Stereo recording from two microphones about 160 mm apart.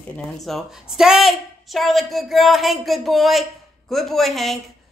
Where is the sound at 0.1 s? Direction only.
Centre (ahead or behind).